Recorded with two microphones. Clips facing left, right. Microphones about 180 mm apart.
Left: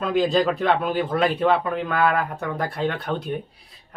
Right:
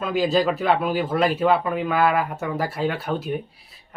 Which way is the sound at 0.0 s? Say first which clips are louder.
Left 1 dB; 5° right (ahead or behind).